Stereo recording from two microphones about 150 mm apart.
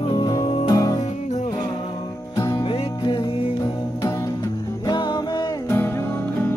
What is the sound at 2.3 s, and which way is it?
Music, 25° left (ahead or behind).